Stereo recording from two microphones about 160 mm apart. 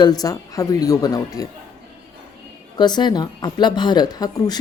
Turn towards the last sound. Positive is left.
turn(degrees=25)  # may be behind; listen again after turning